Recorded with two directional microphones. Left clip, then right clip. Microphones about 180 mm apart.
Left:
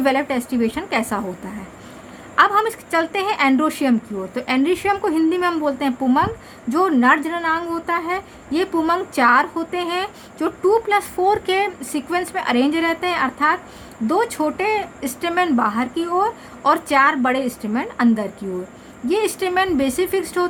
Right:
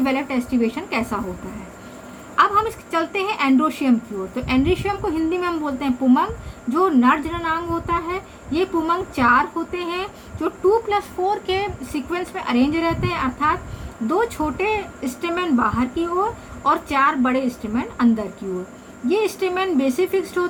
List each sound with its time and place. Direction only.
0.0 s a woman's voice: 50° left (ahead or behind)
2.3 s a woman's voice: 50° left (ahead or behind)